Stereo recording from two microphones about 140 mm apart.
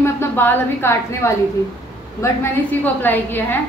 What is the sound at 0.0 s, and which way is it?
A woman's voice, 15° left (ahead or behind).